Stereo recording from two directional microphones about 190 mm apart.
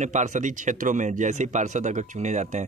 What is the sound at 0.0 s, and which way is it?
A man's voice, 40° right (ahead or behind).